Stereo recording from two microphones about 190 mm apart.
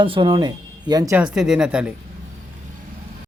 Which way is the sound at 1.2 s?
5° right (ahead or behind).